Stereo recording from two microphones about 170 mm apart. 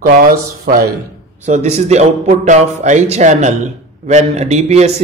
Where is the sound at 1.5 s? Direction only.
40° right (ahead or behind).